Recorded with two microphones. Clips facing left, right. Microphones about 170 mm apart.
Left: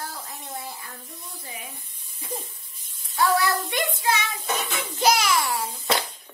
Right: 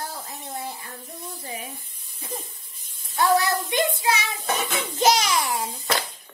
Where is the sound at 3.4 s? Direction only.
20° right (ahead or behind).